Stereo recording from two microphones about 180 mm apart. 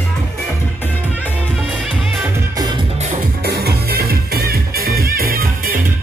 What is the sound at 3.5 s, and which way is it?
Music, 60° right (ahead or behind).